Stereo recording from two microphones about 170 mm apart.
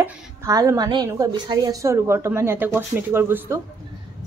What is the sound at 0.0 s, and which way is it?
A woman's voice, 20° right (ahead or behind).